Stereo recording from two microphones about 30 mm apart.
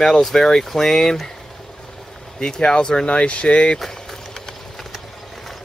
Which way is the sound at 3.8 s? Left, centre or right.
Centre.